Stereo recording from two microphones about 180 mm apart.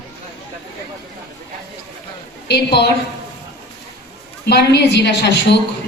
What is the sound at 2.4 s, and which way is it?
Speech, 65° left (ahead or behind).